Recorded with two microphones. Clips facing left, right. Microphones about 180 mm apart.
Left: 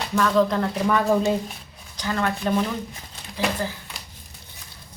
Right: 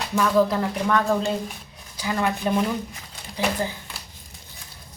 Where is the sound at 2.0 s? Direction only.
10° right (ahead or behind).